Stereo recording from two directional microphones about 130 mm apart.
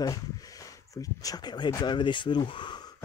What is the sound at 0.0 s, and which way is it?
Speech, 30° left (ahead or behind).